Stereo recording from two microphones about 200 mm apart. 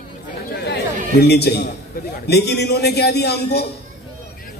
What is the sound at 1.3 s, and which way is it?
A man's voice, 55° left (ahead or behind).